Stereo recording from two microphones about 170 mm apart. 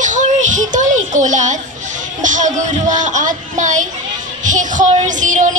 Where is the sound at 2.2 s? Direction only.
50° right (ahead or behind).